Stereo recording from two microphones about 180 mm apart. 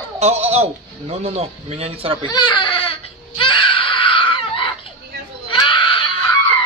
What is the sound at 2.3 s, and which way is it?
Baby cry, 25° left (ahead or behind).